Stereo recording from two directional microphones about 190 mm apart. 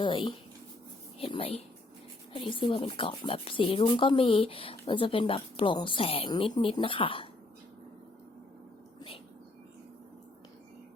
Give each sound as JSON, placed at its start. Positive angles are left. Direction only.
{"t": 0.0, "sound": "speech", "side_deg": 25}